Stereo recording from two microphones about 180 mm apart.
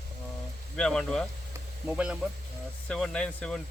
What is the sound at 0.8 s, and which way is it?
Speech, 5° left (ahead or behind).